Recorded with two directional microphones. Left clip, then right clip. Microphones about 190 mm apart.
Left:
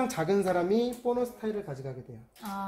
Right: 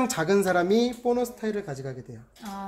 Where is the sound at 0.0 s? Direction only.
15° right (ahead or behind).